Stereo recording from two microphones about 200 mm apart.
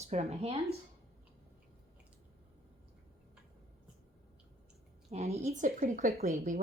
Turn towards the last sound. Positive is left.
turn(degrees=-35)  # may be behind; listen again after turning